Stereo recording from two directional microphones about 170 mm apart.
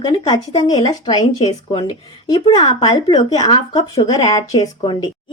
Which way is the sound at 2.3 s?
25° left (ahead or behind).